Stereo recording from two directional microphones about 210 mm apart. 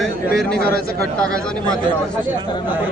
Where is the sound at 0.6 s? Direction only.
45° left (ahead or behind).